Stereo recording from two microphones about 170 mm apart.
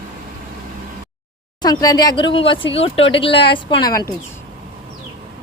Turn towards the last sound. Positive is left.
turn(degrees=20)  # may be behind; listen again after turning